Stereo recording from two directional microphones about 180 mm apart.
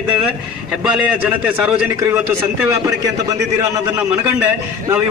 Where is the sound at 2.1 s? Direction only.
15° right (ahead or behind).